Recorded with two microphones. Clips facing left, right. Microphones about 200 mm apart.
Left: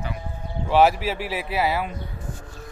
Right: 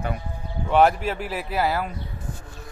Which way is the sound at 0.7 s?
5° left (ahead or behind).